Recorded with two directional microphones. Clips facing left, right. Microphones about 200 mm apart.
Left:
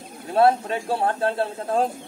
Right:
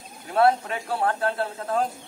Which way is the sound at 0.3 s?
30° left (ahead or behind).